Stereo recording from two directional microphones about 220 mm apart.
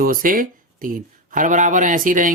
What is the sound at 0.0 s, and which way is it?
Speech, 40° right (ahead or behind).